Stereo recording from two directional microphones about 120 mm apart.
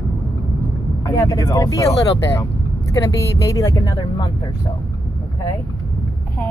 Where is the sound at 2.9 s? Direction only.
25° left (ahead or behind).